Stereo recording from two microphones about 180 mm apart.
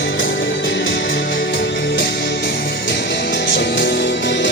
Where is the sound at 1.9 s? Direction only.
65° left (ahead or behind).